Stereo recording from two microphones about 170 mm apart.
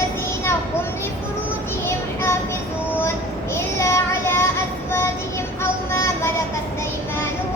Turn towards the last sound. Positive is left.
turn(degrees=15)  # may be behind; listen again after turning